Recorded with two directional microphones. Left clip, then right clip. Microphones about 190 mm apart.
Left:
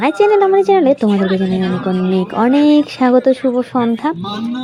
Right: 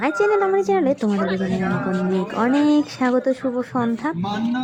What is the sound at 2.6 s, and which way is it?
Speech, 15° left (ahead or behind).